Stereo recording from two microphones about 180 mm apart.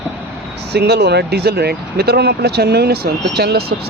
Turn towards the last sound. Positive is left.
turn(degrees=-65)  # may be behind; listen again after turning